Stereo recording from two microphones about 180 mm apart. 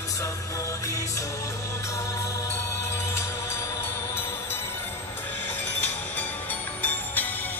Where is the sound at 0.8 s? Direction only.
20° left (ahead or behind).